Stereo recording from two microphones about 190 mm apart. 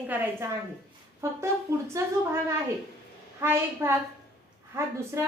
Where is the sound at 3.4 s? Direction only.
10° right (ahead or behind).